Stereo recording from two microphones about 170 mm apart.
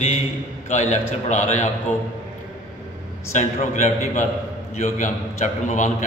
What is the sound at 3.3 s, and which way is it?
A man's voice, 45° left (ahead or behind).